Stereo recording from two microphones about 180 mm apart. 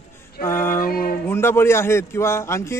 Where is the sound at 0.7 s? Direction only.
55° left (ahead or behind).